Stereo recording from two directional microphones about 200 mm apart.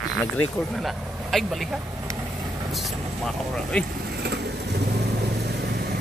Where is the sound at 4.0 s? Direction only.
50° right (ahead or behind).